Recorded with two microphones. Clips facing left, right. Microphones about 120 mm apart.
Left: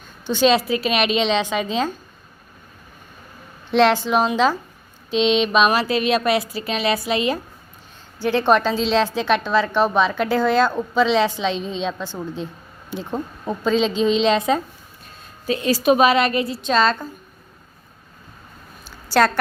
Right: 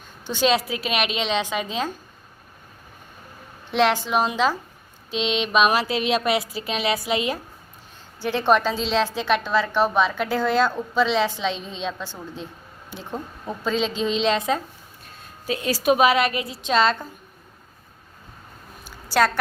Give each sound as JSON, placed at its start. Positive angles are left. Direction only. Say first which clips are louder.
{"t": 0.3, "sound": "a woman's voice", "louder": "left 4 dB", "side_deg": -10}
{"t": 3.7, "sound": "a woman's voice", "louder": "left 4 dB", "side_deg": -10}
{"t": 13.1, "sound": "speech", "louder": "left 4 dB", "side_deg": 30}
{"t": 13.7, "sound": "a woman's voice", "louder": "left 5 dB", "side_deg": 0}
{"t": 18.9, "sound": "a sound", "louder": "left 3 dB", "side_deg": -10}